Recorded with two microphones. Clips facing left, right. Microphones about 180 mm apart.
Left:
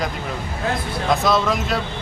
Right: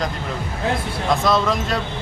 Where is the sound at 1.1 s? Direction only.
Centre (ahead or behind).